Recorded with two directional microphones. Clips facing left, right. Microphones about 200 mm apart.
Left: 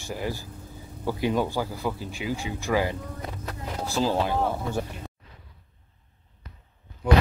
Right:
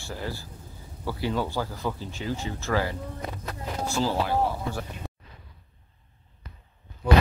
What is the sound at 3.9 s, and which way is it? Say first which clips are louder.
Speech: left 1 dB; 20° left (ahead or behind).